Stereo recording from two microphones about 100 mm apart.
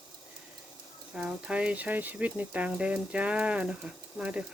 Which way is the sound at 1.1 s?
10° right (ahead or behind).